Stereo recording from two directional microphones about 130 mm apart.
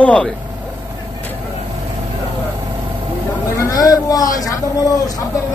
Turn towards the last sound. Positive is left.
turn(degrees=30)  # may be behind; listen again after turning